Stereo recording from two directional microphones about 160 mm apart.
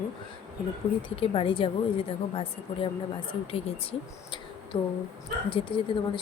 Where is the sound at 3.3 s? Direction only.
35° left (ahead or behind).